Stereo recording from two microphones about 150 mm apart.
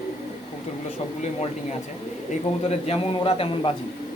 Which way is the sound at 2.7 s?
40° left (ahead or behind).